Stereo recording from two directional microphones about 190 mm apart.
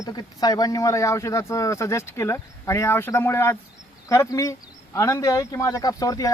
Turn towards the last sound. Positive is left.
turn(degrees=20)  # may be behind; listen again after turning